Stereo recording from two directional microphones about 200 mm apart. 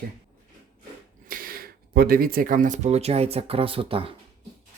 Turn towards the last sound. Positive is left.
turn(degrees=-25)  # may be behind; listen again after turning